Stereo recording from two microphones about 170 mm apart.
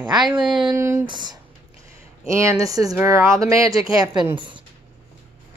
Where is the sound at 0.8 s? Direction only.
15° right (ahead or behind).